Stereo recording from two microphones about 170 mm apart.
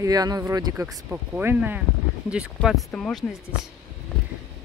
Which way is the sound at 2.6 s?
Centre (ahead or behind).